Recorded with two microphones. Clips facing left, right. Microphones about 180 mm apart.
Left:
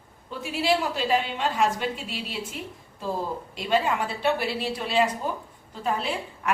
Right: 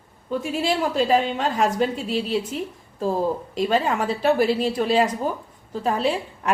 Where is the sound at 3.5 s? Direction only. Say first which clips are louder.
Right 1 dB; 45° right (ahead or behind).